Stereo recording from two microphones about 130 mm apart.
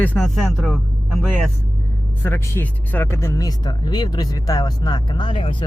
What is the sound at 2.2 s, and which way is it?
Speech, 15° left (ahead or behind).